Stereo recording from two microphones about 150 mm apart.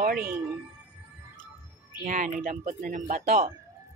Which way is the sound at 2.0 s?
55° right (ahead or behind).